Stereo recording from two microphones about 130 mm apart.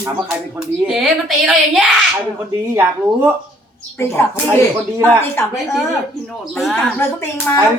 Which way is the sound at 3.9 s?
20° left (ahead or behind).